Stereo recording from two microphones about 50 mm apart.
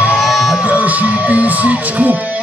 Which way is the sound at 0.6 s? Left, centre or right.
Right.